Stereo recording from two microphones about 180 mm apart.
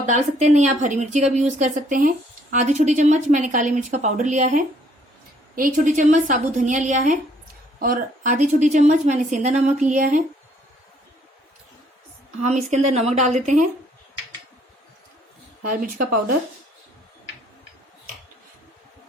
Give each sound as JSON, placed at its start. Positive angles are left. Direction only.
{"t": 0.0, "sound": "speech", "side_deg": -40}
{"t": 12.4, "sound": "speech", "side_deg": -40}
{"t": 15.6, "sound": "speech", "side_deg": -50}